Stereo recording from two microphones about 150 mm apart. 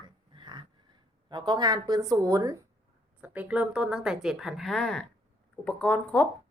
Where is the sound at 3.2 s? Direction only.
10° right (ahead or behind); by 6.3 s 10° left (ahead or behind).